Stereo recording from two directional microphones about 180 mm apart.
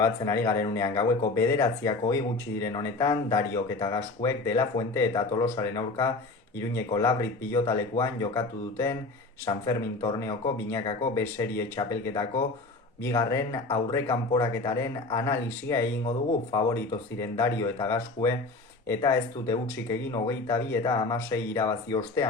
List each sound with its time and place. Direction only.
0.0 s speech: 15° left (ahead or behind)